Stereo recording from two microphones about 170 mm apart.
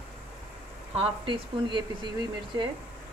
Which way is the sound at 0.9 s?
30° right (ahead or behind).